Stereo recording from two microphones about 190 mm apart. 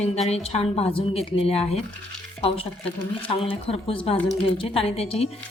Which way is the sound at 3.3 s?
30° left (ahead or behind).